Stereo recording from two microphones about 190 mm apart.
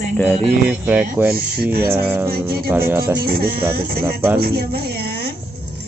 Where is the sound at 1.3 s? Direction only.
55° right (ahead or behind).